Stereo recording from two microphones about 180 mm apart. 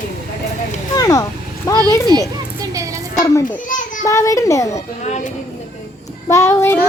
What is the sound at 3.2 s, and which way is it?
Speech, 15° left (ahead or behind).